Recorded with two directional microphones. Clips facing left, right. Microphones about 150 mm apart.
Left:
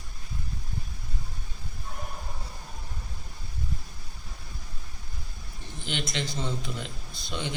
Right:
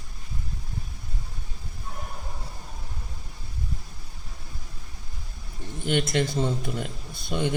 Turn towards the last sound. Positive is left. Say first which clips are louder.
# right 7 dB
turn(degrees=-50)  # may be behind; listen again after turning